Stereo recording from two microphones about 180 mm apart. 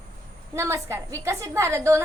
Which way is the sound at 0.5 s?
15° right (ahead or behind).